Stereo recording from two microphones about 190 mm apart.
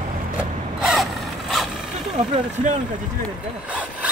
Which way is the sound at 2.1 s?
40° right (ahead or behind).